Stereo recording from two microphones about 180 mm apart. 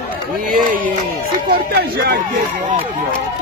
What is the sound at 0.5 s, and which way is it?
Speech, 50° right (ahead or behind).